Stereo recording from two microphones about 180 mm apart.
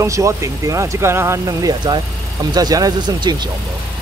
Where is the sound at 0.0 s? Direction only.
15° right (ahead or behind).